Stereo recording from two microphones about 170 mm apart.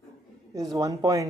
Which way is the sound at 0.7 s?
20° right (ahead or behind).